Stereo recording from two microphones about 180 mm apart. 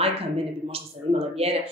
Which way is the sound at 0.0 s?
30° right (ahead or behind).